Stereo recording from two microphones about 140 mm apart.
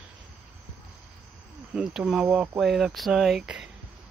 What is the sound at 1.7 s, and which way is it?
Speech, 5° right (ahead or behind).